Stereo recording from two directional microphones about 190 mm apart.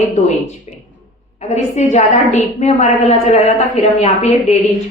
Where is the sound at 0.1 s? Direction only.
40° left (ahead or behind).